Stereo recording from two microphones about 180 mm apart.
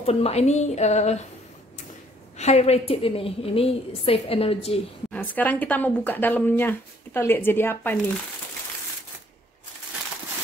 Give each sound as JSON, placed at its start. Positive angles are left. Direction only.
{"t": 0.0, "sound": "a woman's voice", "side_deg": 35}
{"t": 2.3, "sound": "a woman's voice", "side_deg": 35}
{"t": 5.1, "sound": "speech", "side_deg": 10}